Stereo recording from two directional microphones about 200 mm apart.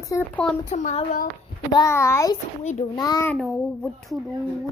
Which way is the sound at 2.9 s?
20° left (ahead or behind).